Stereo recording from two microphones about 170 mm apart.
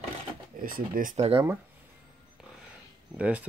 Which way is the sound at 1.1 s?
35° right (ahead or behind).